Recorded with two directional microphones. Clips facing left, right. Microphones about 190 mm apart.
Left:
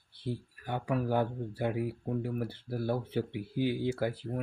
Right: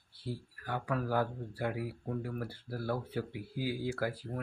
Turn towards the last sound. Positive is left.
turn(degrees=25)  # may be behind; listen again after turning